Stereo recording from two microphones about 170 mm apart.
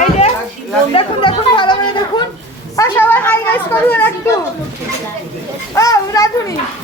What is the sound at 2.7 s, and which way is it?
Speech, 15° left (ahead or behind).